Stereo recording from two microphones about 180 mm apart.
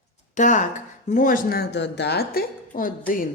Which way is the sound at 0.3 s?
45° left (ahead or behind).